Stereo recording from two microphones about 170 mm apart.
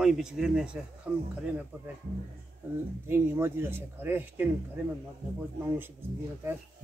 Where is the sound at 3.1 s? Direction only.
15° right (ahead or behind).